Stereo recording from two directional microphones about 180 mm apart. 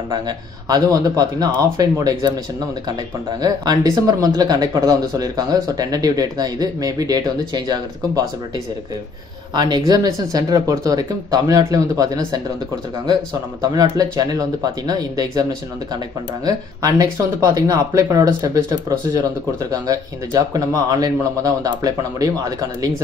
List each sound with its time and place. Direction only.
0.7 s speech: 20° right (ahead or behind)
3.3 s speech: 20° right (ahead or behind)
9.5 s speech: 25° right (ahead or behind)
13.6 s speech: 20° right (ahead or behind)
16.4 s speech: 20° right (ahead or behind)